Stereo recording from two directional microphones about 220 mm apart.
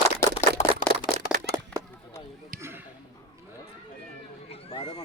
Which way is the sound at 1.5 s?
10° right (ahead or behind).